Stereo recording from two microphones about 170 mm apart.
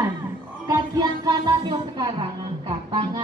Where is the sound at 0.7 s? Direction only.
25° right (ahead or behind).